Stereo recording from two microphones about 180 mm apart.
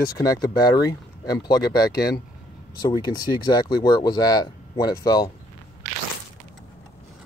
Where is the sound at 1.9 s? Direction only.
60° left (ahead or behind).